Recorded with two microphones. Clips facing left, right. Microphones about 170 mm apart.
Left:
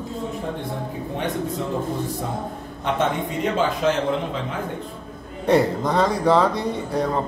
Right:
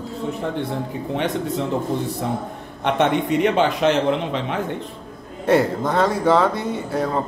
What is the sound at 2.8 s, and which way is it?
A man's voice, 70° right (ahead or behind).